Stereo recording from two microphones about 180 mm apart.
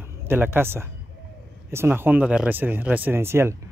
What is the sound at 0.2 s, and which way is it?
Speech, 10° right (ahead or behind).